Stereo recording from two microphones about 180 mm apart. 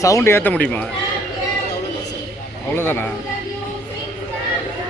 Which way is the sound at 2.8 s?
10° left (ahead or behind).